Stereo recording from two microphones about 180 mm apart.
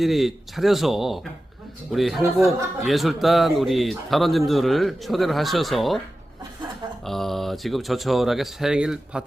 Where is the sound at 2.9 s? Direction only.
Centre (ahead or behind).